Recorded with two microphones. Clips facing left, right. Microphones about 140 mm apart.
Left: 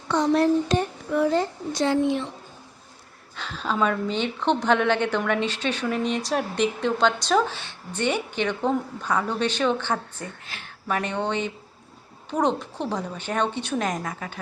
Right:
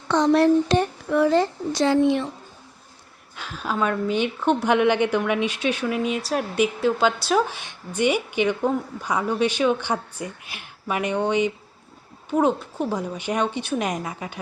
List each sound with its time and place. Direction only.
0.1 s speech: 80° right
3.3 s speech: 10° right (ahead or behind)